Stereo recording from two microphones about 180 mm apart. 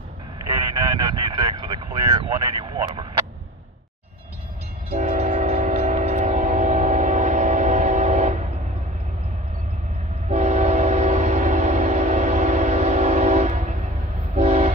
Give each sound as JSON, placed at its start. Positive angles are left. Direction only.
{"t": 0.5, "sound": "a sound", "side_deg": -20}
{"t": 4.9, "sound": "train", "side_deg": -35}
{"t": 10.3, "sound": "train", "side_deg": -40}